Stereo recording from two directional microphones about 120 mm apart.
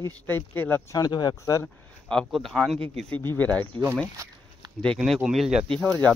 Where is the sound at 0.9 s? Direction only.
35° left (ahead or behind).